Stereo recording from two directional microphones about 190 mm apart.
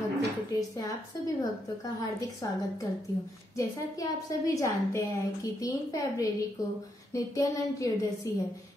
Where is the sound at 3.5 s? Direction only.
15° left (ahead or behind).